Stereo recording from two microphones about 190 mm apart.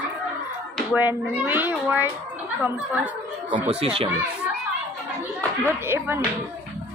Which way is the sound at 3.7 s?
30° right (ahead or behind).